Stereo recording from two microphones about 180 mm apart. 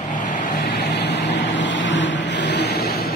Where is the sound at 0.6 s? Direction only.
70° left (ahead or behind).